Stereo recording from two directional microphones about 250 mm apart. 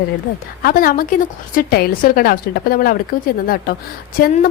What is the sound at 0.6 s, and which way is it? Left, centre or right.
A woman's voice, left.